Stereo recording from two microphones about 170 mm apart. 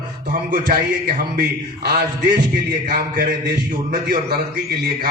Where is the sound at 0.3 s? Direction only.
65° right (ahead or behind).